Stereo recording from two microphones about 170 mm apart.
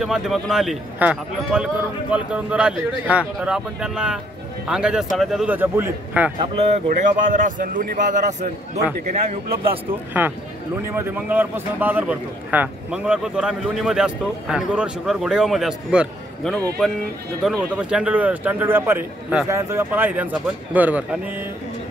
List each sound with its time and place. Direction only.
0.0 s a man's voice: centre (ahead or behind)
6.9 s speech: 50° right (ahead or behind)
9.7 s a man's voice: 10° right (ahead or behind)